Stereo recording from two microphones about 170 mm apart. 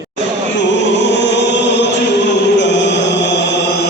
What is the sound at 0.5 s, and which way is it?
Chant, 90° left.